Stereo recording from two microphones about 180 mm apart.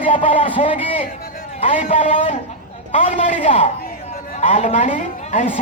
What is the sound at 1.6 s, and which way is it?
Speech, 45° left (ahead or behind).